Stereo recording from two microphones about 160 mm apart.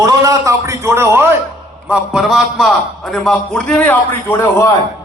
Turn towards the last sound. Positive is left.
turn(degrees=15)  # may be behind; listen again after turning